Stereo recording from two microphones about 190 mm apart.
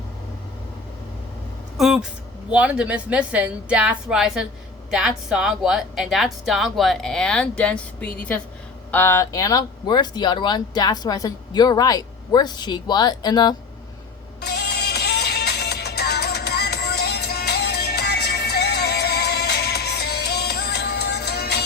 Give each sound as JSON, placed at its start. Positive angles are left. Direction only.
{"t": 1.8, "sound": "a woman's voice", "side_deg": -5}
{"t": 14.4, "sound": "music", "side_deg": 60}